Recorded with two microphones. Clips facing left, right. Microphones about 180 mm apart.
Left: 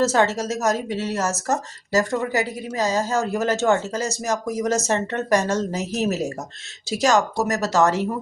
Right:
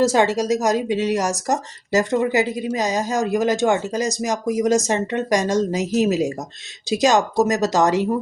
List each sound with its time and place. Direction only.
0.0 s a woman's voice: 15° right (ahead or behind)